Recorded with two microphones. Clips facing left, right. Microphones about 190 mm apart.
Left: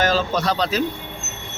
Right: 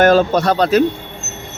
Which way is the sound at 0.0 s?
55° right (ahead or behind).